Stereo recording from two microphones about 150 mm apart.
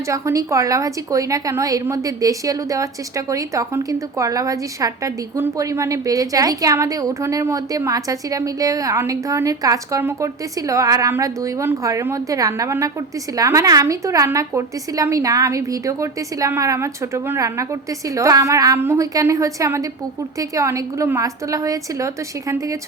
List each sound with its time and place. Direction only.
0.1 s a woman's voice: 20° right (ahead or behind)